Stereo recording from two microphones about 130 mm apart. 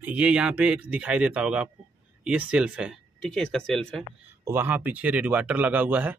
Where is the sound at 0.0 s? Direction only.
10° right (ahead or behind).